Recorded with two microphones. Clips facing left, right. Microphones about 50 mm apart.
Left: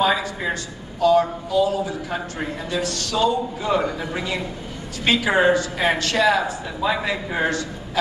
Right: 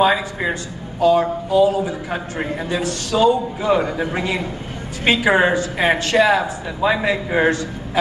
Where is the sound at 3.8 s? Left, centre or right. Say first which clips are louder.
Right 4 dB; right.